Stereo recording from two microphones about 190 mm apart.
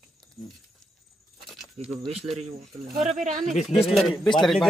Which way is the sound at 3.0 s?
40° right (ahead or behind).